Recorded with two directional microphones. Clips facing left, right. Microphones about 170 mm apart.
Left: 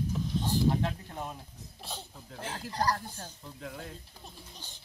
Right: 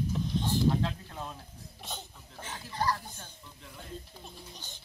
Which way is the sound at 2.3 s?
40° left (ahead or behind).